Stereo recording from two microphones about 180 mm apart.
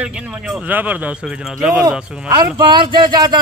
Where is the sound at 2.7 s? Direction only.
25° right (ahead or behind).